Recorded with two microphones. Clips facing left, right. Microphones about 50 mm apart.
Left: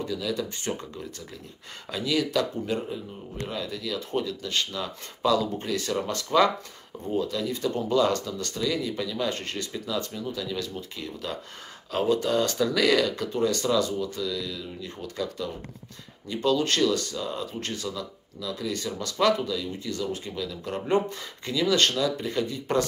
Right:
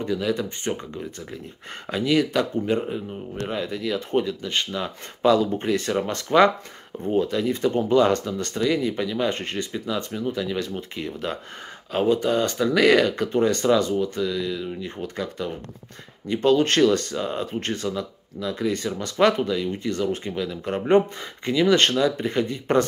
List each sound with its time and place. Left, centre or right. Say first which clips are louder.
0.0 s speech: right 5 dB; right